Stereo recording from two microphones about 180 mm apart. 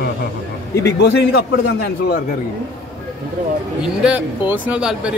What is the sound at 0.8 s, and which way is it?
Speech, 70° left (ahead or behind).